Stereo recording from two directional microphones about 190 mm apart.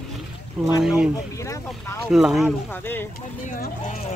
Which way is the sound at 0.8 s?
5° right (ahead or behind).